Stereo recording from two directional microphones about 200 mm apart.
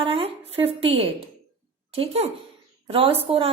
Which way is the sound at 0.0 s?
30° right (ahead or behind).